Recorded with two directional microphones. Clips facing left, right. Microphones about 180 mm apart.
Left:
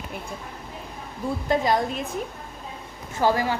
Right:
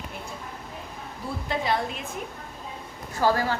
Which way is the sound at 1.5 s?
40° left (ahead or behind).